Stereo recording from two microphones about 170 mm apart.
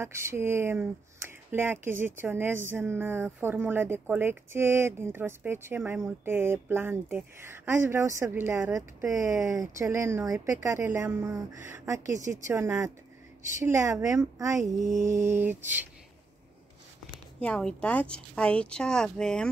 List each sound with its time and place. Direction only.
0.0 s speech: 15° right (ahead or behind)
17.4 s speech: 5° left (ahead or behind)